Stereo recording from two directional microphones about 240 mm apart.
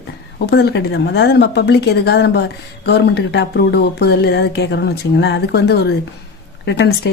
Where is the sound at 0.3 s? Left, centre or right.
Left.